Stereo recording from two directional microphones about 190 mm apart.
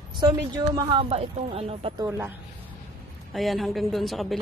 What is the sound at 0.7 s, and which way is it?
Speech, 30° right (ahead or behind).